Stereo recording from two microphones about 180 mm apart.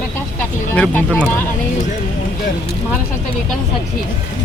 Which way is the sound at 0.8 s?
10° left (ahead or behind).